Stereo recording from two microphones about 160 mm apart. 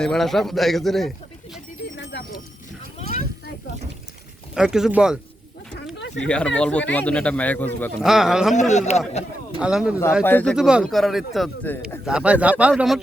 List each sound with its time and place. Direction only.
0.0 s a man's voice: centre (ahead or behind)
2.0 s a sound: 90° left
4.5 s a man's voice: 5° right (ahead or behind)
6.2 s speech: 5° left (ahead or behind)
8.0 s a man's voice: 5° right (ahead or behind)
8.7 s a man's voice: 45° left (ahead or behind)
9.6 s a man's voice: 5° right (ahead or behind)
10.2 s speech: 10° left (ahead or behind)
10.5 s a man's voice: 5° right (ahead or behind)